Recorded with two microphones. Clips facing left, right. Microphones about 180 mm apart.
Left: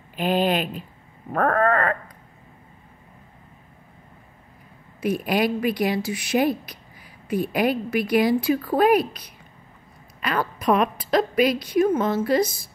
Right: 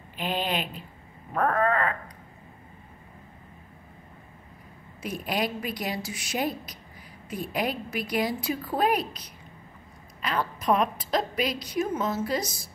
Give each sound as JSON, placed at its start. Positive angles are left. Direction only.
{"t": 0.2, "sound": "a sound", "side_deg": 50}
{"t": 5.0, "sound": "a woman's voice", "side_deg": 70}
{"t": 10.2, "sound": "a woman's voice", "side_deg": 65}
{"t": 12.1, "sound": "a woman's voice", "side_deg": 90}